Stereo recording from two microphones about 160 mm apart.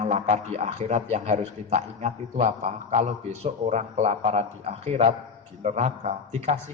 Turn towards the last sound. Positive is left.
turn(degrees=-45)  # may be behind; listen again after turning